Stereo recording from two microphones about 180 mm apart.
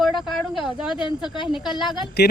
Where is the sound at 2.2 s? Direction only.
65° left (ahead or behind).